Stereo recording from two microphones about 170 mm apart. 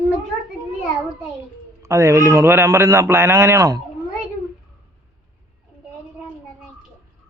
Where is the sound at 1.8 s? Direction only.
15° right (ahead or behind).